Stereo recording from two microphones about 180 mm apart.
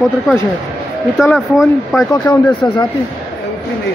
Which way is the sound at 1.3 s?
Centre (ahead or behind).